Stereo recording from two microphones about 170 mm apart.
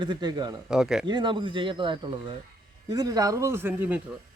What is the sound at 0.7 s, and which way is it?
Speech, 5° right (ahead or behind).